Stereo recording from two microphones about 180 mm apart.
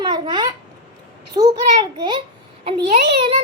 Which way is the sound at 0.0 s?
25° right (ahead or behind).